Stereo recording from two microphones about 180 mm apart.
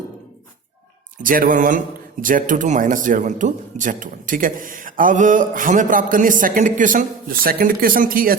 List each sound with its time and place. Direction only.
1.2 s speech: 50° right (ahead or behind)